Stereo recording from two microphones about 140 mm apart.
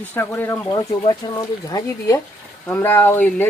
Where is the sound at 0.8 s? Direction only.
30° left (ahead or behind).